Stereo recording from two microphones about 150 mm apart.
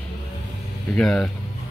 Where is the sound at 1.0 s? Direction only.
5° left (ahead or behind).